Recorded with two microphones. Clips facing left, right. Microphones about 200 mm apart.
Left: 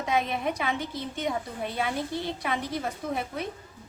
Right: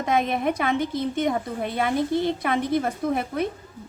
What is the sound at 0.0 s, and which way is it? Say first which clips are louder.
A woman's voice: right 5 dB; 55° right (ahead or behind).